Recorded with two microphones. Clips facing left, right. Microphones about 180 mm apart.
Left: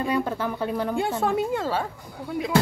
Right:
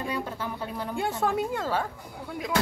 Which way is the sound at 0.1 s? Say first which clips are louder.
Left 7 dB; 70° left (ahead or behind).